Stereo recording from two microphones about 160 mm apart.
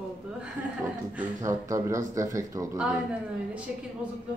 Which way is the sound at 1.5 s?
20° right (ahead or behind).